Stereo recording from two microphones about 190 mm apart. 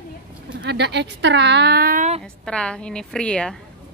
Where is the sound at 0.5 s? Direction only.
65° right (ahead or behind); by 2.2 s 40° right (ahead or behind).